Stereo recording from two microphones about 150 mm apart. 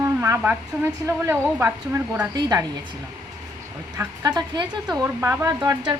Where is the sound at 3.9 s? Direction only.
20° right (ahead or behind).